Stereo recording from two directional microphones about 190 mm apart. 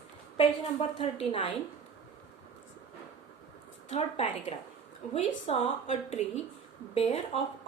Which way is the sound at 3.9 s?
35° left (ahead or behind).